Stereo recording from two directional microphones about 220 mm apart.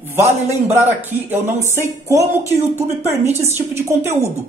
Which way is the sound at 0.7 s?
10° right (ahead or behind).